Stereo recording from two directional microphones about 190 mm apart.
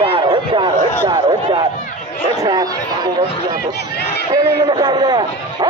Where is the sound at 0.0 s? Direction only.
25° right (ahead or behind).